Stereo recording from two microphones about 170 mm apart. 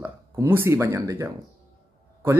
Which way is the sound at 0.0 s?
15° right (ahead or behind).